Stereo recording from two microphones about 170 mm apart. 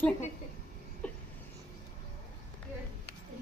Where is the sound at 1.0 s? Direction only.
10° left (ahead or behind).